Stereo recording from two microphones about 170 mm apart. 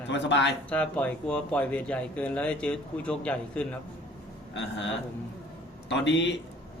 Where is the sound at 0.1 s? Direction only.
90° left.